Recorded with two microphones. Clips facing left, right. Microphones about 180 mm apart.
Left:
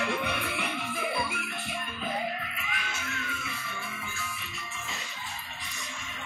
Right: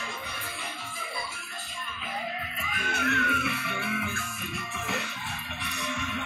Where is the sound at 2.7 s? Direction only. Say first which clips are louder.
Right 10 dB; 55° right (ahead or behind).